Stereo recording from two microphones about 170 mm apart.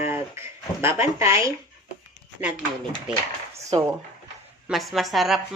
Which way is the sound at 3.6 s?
20° right (ahead or behind).